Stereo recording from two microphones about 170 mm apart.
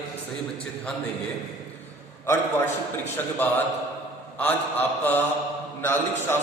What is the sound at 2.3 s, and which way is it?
A man's voice, 15° left (ahead or behind).